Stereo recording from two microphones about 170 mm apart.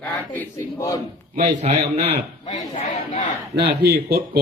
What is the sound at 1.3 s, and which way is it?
Speech, 45° right (ahead or behind).